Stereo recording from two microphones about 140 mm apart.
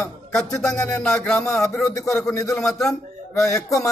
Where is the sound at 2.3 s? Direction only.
20° left (ahead or behind).